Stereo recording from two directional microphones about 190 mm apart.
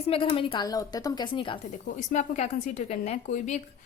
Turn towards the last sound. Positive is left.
turn(degrees=40)  # may be behind; listen again after turning